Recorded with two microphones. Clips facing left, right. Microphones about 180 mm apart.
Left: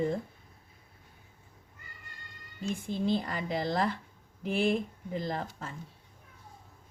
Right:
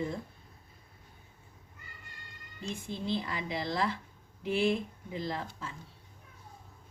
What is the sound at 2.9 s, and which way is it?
A woman's voice, 45° left (ahead or behind).